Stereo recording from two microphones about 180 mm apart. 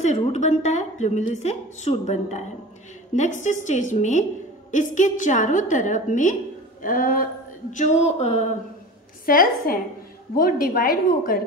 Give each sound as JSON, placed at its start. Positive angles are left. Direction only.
{"t": 0.0, "sound": "a woman's voice", "side_deg": 40}
{"t": 9.2, "sound": "a woman's voice", "side_deg": 55}